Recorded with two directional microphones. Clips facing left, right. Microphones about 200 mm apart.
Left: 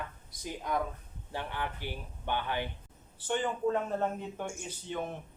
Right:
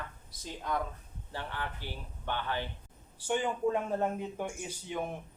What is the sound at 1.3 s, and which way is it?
Speech, 15° left (ahead or behind).